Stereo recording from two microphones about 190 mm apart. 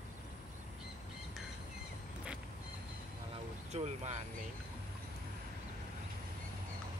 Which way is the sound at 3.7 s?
35° right (ahead or behind).